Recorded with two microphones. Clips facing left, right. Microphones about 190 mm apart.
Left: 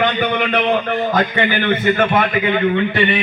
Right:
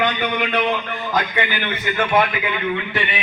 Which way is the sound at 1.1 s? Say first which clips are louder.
Left 2 dB; 50° left (ahead or behind).